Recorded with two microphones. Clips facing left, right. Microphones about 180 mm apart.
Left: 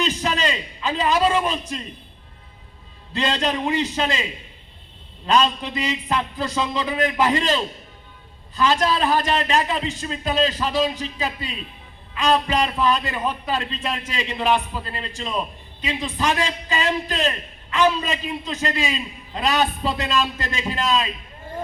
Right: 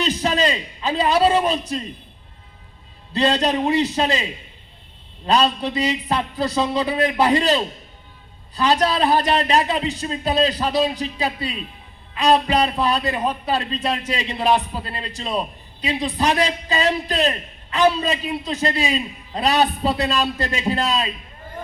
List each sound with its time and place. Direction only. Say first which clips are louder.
0.0 s a man's voice: right 3 dB; 35° right (ahead or behind)
3.1 s a man's voice: right 4 dB; 35° right (ahead or behind)